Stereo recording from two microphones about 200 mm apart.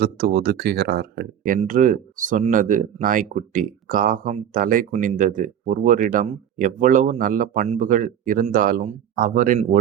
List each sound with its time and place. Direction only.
0.0 s speech: 50° right (ahead or behind)